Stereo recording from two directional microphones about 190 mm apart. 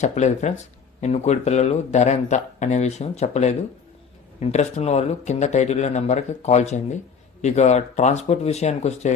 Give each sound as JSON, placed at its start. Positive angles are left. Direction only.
{"t": 0.0, "sound": "speech", "side_deg": 35}